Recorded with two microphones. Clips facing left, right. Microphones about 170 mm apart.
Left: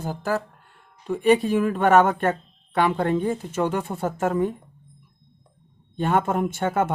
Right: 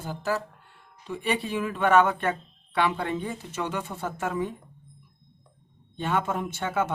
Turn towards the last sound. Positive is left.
turn(degrees=50)  # may be behind; listen again after turning